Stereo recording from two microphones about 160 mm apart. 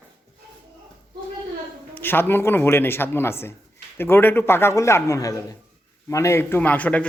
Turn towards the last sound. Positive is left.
turn(degrees=10)  # may be behind; listen again after turning